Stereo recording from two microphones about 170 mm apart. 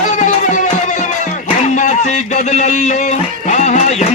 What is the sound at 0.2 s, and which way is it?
Music, 50° left (ahead or behind).